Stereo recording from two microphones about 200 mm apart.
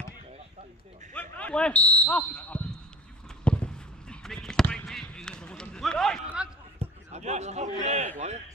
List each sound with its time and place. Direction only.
1.1 s speech: 5° left (ahead or behind)
3.4 s basketball bounce: 5° left (ahead or behind)
6.8 s a sound: 35° right (ahead or behind)
7.8 s a man's voice: 35° right (ahead or behind)